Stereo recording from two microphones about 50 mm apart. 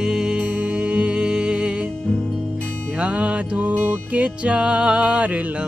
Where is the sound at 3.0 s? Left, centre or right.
Right.